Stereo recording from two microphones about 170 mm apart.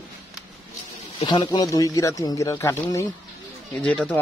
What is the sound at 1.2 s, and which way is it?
Speech, 25° left (ahead or behind).